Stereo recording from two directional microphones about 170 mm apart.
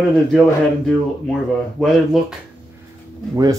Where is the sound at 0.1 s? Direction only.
Centre (ahead or behind).